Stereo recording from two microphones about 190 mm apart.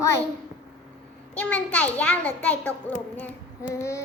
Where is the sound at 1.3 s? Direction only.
5° left (ahead or behind).